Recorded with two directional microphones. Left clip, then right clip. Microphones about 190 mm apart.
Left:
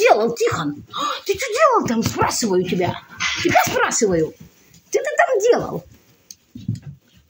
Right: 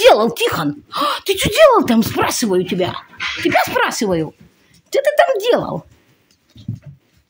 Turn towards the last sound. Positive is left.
turn(degrees=-30)  # may be behind; listen again after turning